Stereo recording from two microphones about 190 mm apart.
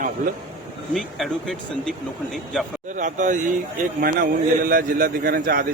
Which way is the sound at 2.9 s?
40° right (ahead or behind).